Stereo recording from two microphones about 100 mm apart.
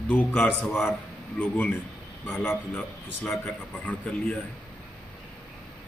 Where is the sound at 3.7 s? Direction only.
10° left (ahead or behind).